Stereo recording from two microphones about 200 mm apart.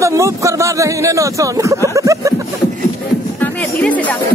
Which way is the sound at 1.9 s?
15° right (ahead or behind).